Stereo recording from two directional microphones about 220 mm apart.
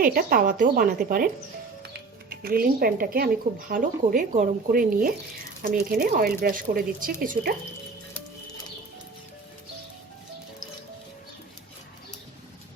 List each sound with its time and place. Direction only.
0.0 s speech: 40° right (ahead or behind)
2.3 s a woman's voice: 40° right (ahead or behind)